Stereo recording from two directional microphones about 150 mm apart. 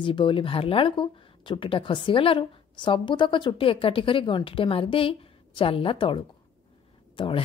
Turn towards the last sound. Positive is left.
turn(degrees=35)  # may be behind; listen again after turning